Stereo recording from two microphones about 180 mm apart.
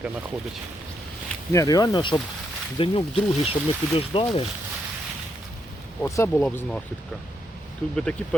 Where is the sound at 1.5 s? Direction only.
20° left (ahead or behind).